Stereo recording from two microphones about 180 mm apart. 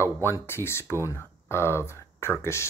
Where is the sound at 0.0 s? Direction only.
15° left (ahead or behind).